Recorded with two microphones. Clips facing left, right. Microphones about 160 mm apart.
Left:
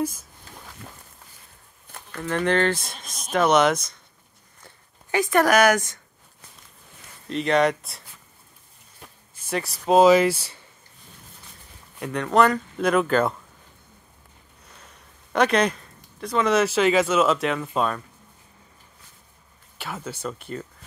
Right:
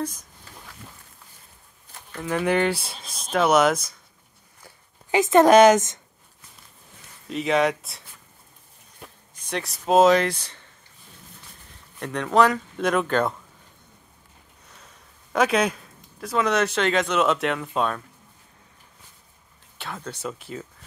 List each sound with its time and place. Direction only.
0.0 s speech: 5° left (ahead or behind)
2.2 s speech: 10° right (ahead or behind)
4.6 s speech: 20° right (ahead or behind)
7.2 s speech: centre (ahead or behind)
9.4 s speech: 5° left (ahead or behind)
12.0 s speech: centre (ahead or behind)
14.7 s speech: centre (ahead or behind)
19.8 s speech: 5° left (ahead or behind)